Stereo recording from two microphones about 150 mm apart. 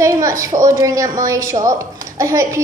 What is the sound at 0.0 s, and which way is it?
A woman's voice, 20° right (ahead or behind).